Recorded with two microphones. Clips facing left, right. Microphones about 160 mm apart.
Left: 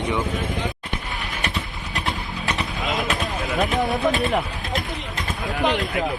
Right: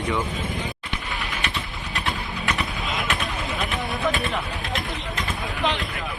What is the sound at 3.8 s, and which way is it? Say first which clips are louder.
Vehicle: left 3 dB; 20° left (ahead or behind).